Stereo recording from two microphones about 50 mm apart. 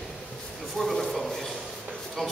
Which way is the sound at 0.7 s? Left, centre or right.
Centre.